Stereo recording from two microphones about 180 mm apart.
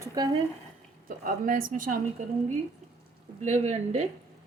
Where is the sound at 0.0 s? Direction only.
20° right (ahead or behind).